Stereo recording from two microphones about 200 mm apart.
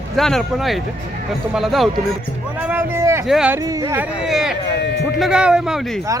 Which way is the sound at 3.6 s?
15° right (ahead or behind).